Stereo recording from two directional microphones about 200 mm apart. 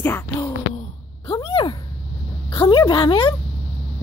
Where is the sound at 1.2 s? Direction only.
25° left (ahead or behind).